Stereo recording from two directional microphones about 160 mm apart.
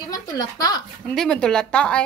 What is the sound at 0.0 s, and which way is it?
Speech, 25° left (ahead or behind).